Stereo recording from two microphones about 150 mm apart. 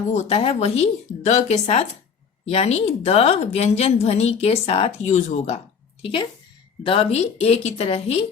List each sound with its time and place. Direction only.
0.1 s a woman's voice: 45° left (ahead or behind)
6.0 s a woman's voice: 35° left (ahead or behind)